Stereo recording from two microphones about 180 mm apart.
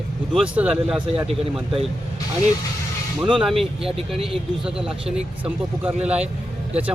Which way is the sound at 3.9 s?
30° right (ahead or behind).